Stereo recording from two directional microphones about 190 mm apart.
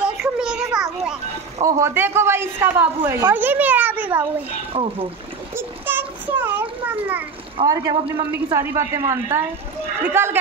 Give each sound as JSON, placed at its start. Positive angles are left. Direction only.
{"t": 0.0, "sound": "children playing", "side_deg": -5}
{"t": 1.6, "sound": "a woman's voice", "side_deg": -15}
{"t": 4.7, "sound": "speech", "side_deg": -30}
{"t": 5.5, "sound": "a sound", "side_deg": -10}
{"t": 7.6, "sound": "a man's voice", "side_deg": -20}